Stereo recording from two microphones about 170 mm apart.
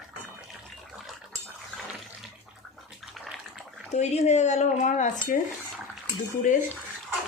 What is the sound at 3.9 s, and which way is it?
Speech, 40° left (ahead or behind).